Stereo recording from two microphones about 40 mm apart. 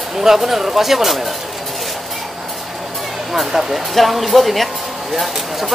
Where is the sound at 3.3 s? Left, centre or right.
Centre.